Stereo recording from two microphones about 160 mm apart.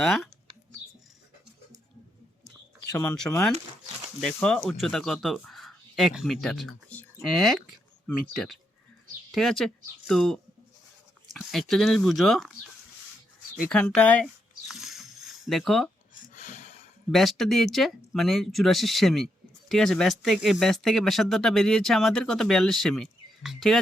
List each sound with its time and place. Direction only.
0.0 s speech: centre (ahead or behind)
2.8 s speech: 20° left (ahead or behind)
4.2 s speech: 5° left (ahead or behind)
13.7 s speech: 5° left (ahead or behind)
14.7 s a sound: centre (ahead or behind)
16.3 s a sound: 50° left (ahead or behind)
17.1 s speech: centre (ahead or behind)